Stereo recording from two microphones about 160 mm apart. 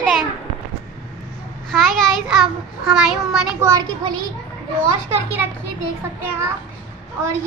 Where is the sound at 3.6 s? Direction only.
20° right (ahead or behind).